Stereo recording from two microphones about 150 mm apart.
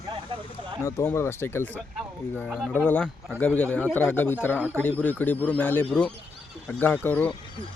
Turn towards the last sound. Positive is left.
turn(degrees=10)  # may be behind; listen again after turning